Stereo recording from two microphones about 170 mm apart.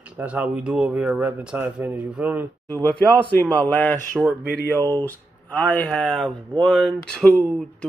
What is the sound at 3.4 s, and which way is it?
Speech, 10° left (ahead or behind).